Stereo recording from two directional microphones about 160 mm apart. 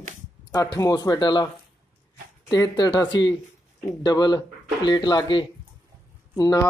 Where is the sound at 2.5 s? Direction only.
25° left (ahead or behind).